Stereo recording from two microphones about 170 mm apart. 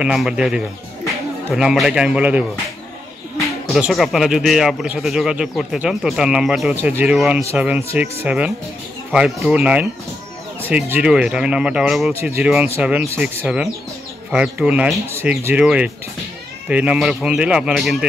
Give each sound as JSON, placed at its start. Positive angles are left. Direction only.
{"t": 0.0, "sound": "a man's voice", "side_deg": -5}
{"t": 3.6, "sound": "a man's voice", "side_deg": 0}
{"t": 6.7, "sound": "a man's voice", "side_deg": -10}
{"t": 10.9, "sound": "a man's voice", "side_deg": -5}